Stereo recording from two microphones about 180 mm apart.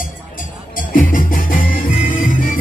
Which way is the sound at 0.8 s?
50° left (ahead or behind).